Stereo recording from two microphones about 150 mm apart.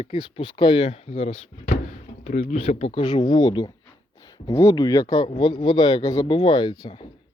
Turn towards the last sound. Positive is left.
turn(degrees=30)  # may be behind; listen again after turning